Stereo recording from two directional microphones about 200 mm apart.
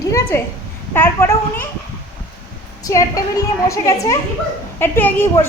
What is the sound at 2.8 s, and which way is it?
Speech, 15° left (ahead or behind).